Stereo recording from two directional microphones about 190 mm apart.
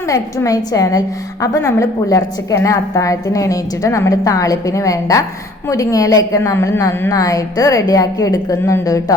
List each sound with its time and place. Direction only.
0.1 s a woman's voice: 20° left (ahead or behind)